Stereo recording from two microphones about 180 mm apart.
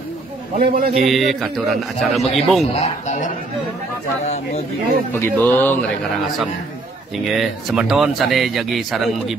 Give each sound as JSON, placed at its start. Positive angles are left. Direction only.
{"t": 0.6, "sound": "a man's voice", "side_deg": -55}
{"t": 1.0, "sound": "speech", "side_deg": 0}
{"t": 2.6, "sound": "speech", "side_deg": 40}
{"t": 5.1, "sound": "speech", "side_deg": 10}
{"t": 7.2, "sound": "speech", "side_deg": 0}